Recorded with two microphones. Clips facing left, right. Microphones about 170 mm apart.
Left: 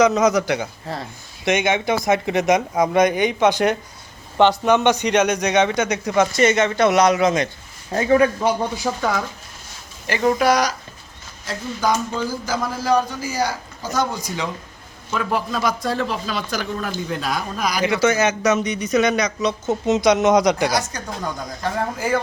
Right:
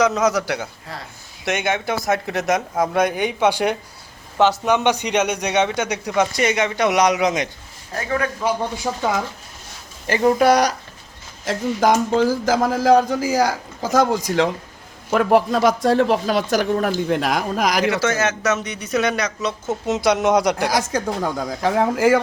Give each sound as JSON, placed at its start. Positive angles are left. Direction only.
{"t": 0.3, "sound": "a man's voice", "side_deg": -5}
{"t": 6.3, "sound": "a man's voice", "side_deg": -15}
{"t": 7.9, "sound": "a man's voice", "side_deg": 20}
{"t": 8.7, "sound": "speech", "side_deg": -20}
{"t": 10.4, "sound": "speech", "side_deg": -60}
{"t": 11.4, "sound": "a man's voice", "side_deg": -90}
{"t": 15.1, "sound": "speech", "side_deg": -65}
{"t": 17.8, "sound": "a man's voice", "side_deg": 0}
{"t": 21.6, "sound": "a man's voice", "side_deg": -90}